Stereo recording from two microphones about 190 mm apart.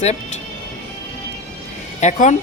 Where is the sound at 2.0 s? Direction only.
40° left (ahead or behind).